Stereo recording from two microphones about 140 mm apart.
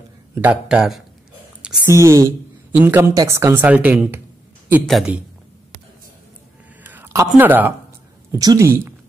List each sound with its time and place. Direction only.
0.3 s speech: 10° right (ahead or behind)
1.9 s a woman's voice: 20° right (ahead or behind)
4.8 s speech: centre (ahead or behind)
6.8 s a sound: 15° right (ahead or behind)
7.3 s speech: 15° right (ahead or behind)
8.4 s a woman's voice: 25° right (ahead or behind)